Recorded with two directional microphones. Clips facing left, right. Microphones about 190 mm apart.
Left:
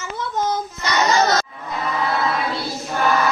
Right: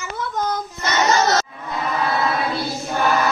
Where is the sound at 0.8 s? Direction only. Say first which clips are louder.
Even; 25° right (ahead or behind).